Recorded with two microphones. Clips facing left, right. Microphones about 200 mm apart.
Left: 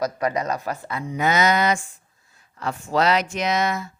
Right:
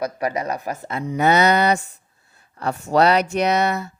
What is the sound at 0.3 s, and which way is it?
Speech, 20° right (ahead or behind).